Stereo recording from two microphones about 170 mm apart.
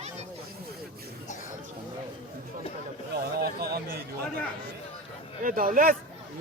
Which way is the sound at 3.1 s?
65° right (ahead or behind).